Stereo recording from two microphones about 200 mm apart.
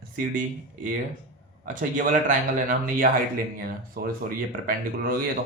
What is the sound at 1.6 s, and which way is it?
Speech, 40° right (ahead or behind).